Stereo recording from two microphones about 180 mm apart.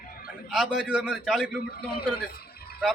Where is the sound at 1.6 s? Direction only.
60° left (ahead or behind).